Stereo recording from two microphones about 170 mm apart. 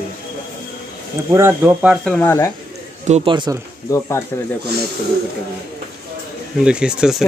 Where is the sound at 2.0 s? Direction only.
10° left (ahead or behind).